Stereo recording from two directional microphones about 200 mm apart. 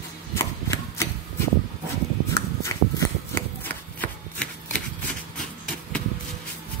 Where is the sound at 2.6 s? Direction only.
15° left (ahead or behind).